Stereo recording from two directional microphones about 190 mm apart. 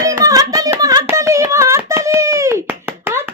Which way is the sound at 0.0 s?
15° right (ahead or behind).